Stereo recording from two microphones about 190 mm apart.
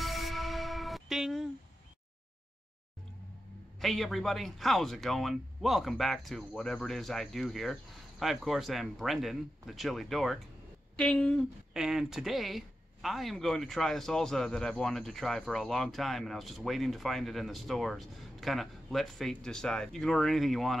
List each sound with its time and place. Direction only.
0.0 s music: centre (ahead or behind)
3.8 s speech: centre (ahead or behind)